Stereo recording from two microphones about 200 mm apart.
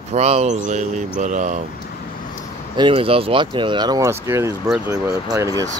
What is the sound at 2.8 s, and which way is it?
Speech, 30° right (ahead or behind).